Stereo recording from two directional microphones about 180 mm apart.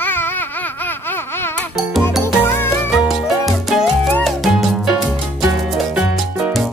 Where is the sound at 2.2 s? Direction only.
10° left (ahead or behind).